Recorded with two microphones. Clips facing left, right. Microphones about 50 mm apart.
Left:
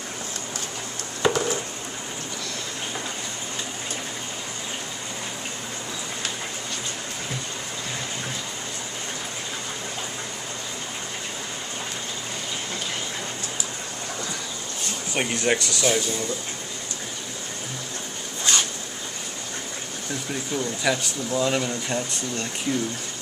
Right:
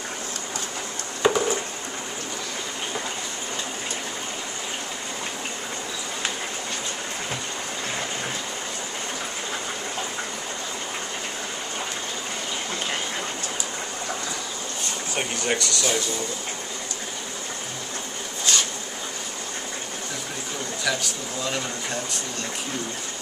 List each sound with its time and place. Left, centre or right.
1.2 s a sound: centre
15.1 s speech: centre
20.9 s speech: left